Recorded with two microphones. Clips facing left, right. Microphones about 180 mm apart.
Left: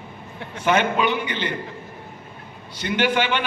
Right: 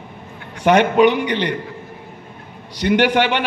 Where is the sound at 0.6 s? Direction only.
70° right (ahead or behind).